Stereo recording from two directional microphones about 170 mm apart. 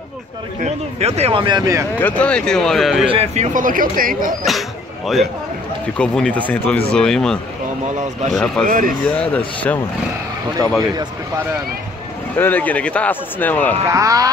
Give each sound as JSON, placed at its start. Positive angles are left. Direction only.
{"t": 0.7, "sound": "speech", "side_deg": -40}
{"t": 2.0, "sound": "speech", "side_deg": 10}
{"t": 3.1, "sound": "speech", "side_deg": -35}
{"t": 3.5, "sound": "speech", "side_deg": -55}
{"t": 4.5, "sound": "speech", "side_deg": 0}
{"t": 8.6, "sound": "speech", "side_deg": -55}
{"t": 9.1, "sound": "speech", "side_deg": 5}
{"t": 12.4, "sound": "speech", "side_deg": 10}
{"t": 13.8, "sound": "speech", "side_deg": -20}